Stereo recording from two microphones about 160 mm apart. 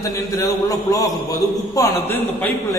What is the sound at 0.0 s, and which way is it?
A man's voice, 20° left (ahead or behind).